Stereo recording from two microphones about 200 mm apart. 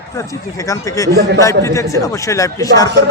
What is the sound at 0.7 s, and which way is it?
A man's voice, 15° left (ahead or behind).